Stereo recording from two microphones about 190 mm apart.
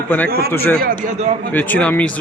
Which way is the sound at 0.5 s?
10° left (ahead or behind).